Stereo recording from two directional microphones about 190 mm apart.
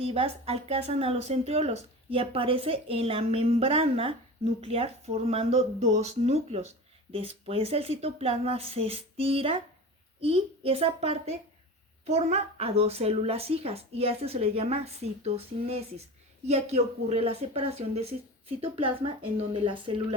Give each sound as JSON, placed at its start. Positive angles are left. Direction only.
{"t": 0.0, "sound": "a woman's voice", "side_deg": -30}